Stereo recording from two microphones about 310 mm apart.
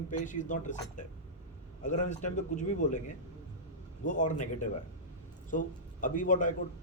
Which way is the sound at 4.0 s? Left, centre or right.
Left.